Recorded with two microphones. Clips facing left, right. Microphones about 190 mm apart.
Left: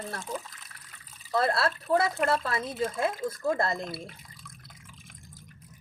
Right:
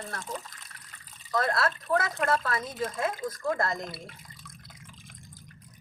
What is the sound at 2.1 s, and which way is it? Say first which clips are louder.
Speech: left 1 dB; centre (ahead or behind).